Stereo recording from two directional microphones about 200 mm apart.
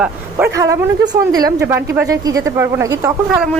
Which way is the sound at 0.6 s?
15° right (ahead or behind).